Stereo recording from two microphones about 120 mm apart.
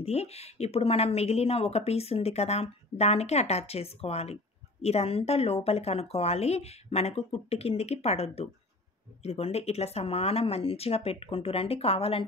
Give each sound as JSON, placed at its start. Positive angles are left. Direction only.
{"t": 0.0, "sound": "speech", "side_deg": 60}